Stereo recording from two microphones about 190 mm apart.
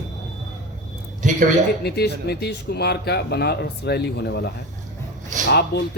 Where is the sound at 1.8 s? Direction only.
60° left (ahead or behind).